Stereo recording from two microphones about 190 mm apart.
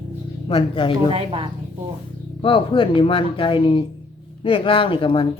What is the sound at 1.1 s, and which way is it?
Speech, 30° right (ahead or behind).